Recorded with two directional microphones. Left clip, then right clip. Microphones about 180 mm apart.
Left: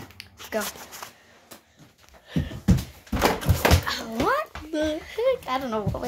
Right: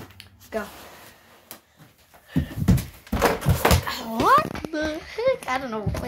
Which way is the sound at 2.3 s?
40° left (ahead or behind).